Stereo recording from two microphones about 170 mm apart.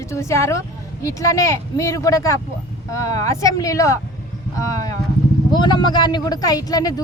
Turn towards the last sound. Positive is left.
turn(degrees=20)  # may be behind; listen again after turning